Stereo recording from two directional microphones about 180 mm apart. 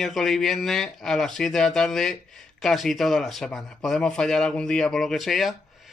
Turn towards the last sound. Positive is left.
turn(degrees=0)  # may be behind; listen again after turning